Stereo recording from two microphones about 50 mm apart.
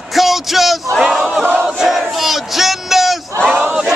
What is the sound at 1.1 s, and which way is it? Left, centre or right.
Battle cry, centre.